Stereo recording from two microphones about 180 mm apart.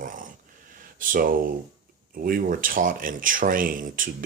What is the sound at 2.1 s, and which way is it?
Speech, 55° right (ahead or behind).